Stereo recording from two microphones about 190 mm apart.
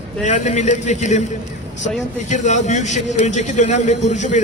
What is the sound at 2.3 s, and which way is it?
A man's voice, 40° left (ahead or behind).